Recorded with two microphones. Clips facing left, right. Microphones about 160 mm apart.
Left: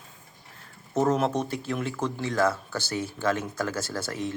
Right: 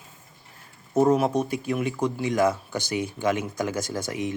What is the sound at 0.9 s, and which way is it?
Speech, 10° right (ahead or behind).